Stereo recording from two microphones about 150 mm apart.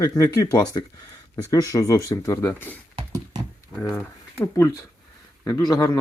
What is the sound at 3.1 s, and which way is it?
Horse, 25° right (ahead or behind).